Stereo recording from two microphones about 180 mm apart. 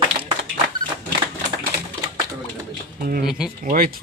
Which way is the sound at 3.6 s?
50° right (ahead or behind).